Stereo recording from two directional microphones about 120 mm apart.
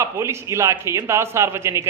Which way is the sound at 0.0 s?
25° right (ahead or behind).